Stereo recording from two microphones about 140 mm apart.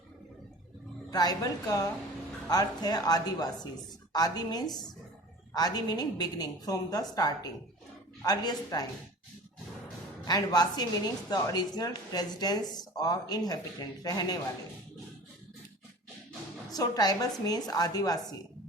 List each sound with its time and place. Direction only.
1.1 s speech: 30° left (ahead or behind)
10.2 s speech: 30° left (ahead or behind)
16.7 s speech: 25° left (ahead or behind)